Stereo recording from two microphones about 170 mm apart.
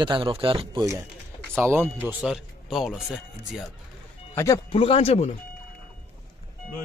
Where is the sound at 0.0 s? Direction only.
30° right (ahead or behind).